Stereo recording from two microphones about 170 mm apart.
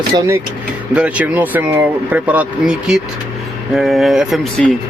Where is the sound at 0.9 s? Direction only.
10° right (ahead or behind).